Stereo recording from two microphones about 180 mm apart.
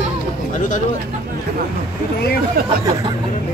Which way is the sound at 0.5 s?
45° left (ahead or behind).